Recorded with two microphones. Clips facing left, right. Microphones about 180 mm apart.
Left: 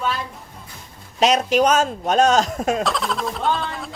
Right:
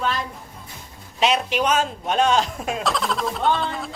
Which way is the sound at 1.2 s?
40° left (ahead or behind).